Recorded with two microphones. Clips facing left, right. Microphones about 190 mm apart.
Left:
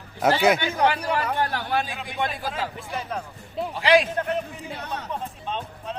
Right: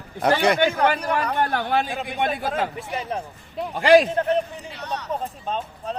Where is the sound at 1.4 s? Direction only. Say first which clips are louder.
Right 3 dB; 55° right (ahead or behind).